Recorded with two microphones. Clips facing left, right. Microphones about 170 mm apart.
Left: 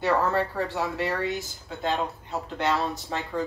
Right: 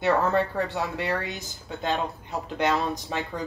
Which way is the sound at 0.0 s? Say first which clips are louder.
Right 1 dB; 20° right (ahead or behind).